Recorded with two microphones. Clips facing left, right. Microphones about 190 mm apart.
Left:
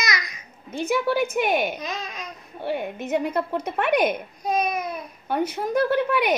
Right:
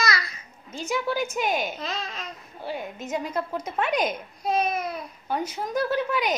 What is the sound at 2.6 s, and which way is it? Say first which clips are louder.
A woman's voice: left 5 dB; 60° left (ahead or behind).